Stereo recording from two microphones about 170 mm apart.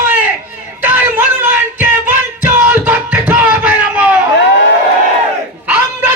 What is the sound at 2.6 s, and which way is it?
Music, 10° right (ahead or behind).